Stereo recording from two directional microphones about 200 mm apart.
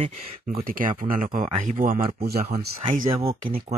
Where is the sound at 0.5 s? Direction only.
45° right (ahead or behind).